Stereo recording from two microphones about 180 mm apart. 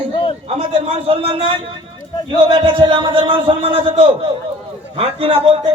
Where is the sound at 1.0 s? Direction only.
30° right (ahead or behind).